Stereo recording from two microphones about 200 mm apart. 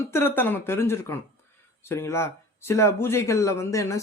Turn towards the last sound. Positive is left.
turn(degrees=15)  # may be behind; listen again after turning